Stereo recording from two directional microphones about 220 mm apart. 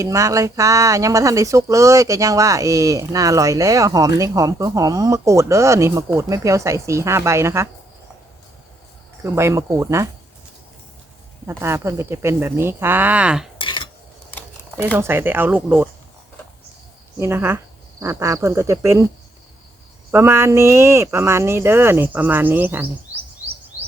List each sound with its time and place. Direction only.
0.0 s speech: 15° right (ahead or behind)
9.2 s speech: 10° right (ahead or behind)
11.4 s speech: 10° right (ahead or behind)
13.6 s cutlery: 20° left (ahead or behind)
14.9 s speech: 10° right (ahead or behind)
17.2 s speech: 10° right (ahead or behind)
20.1 s speech: 10° right (ahead or behind)